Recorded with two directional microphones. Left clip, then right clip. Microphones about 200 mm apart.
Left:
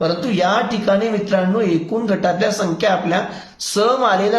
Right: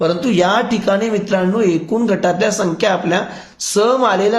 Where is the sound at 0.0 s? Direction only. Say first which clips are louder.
Right 3 dB; 35° right (ahead or behind).